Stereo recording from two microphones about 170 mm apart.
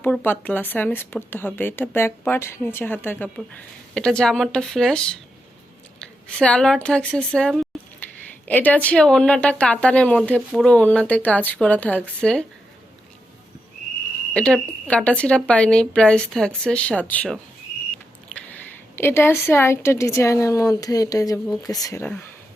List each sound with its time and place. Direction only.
0.0 s speech: 10° left (ahead or behind)
6.0 s a sound: 5° left (ahead or behind)
6.8 s speech: 5° left (ahead or behind)
7.7 s a sound: centre (ahead or behind)
8.4 s speech: 10° left (ahead or behind)
14.3 s speech: 5° left (ahead or behind)
18.3 s a woman's voice: 10° left (ahead or behind)